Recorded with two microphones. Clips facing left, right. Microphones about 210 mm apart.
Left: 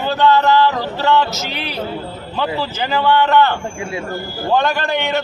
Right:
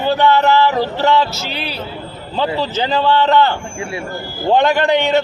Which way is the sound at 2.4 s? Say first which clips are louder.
Right 3 dB; 20° right (ahead or behind).